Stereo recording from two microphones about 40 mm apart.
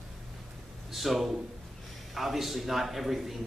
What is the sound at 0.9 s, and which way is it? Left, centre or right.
A man's voice, centre.